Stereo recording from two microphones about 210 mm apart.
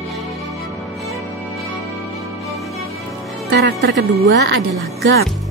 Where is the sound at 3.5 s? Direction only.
50° right (ahead or behind).